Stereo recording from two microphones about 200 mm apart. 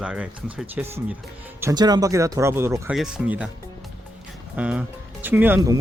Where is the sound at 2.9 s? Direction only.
5° right (ahead or behind).